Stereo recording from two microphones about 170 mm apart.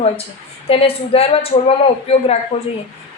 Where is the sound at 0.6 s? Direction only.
35° left (ahead or behind).